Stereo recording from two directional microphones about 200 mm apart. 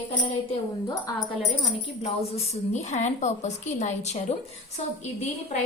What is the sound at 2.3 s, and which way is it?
A woman's voice, 35° left (ahead or behind).